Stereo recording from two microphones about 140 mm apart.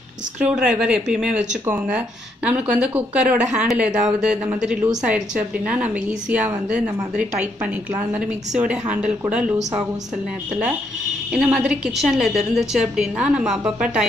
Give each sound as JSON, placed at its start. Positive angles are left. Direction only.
{"t": 0.4, "sound": "a woman's voice", "side_deg": -10}
{"t": 11.3, "sound": "a woman's voice", "side_deg": -10}